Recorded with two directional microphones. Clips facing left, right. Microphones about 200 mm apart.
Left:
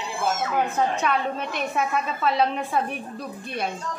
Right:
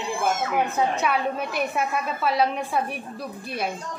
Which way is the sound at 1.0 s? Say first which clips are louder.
Even; 5° right (ahead or behind).